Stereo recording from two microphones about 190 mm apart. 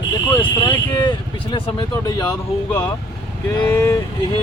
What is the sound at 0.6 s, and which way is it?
Speech, 25° left (ahead or behind).